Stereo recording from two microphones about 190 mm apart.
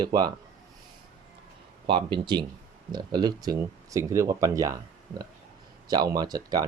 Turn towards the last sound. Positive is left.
turn(degrees=-20)  # may be behind; listen again after turning